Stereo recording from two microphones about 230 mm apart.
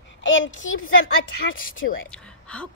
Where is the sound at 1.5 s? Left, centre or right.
Left.